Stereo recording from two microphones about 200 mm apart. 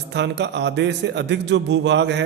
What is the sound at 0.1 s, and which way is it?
A man's voice, 60° right (ahead or behind).